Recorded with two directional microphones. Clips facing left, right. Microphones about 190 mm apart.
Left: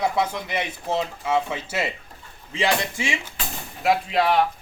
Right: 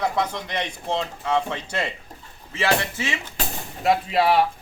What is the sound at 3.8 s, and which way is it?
Speech, centre (ahead or behind).